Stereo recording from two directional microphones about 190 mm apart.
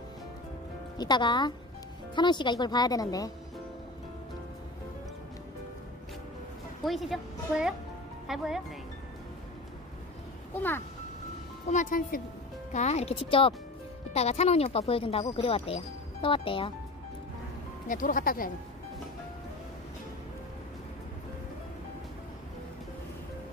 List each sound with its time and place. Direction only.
0.9 s speech: 25° left (ahead or behind)
6.8 s a woman's voice: centre (ahead or behind)
11.7 s speech: 45° left (ahead or behind); by 16.7 s 30° left (ahead or behind)
17.8 s speech: 45° left (ahead or behind)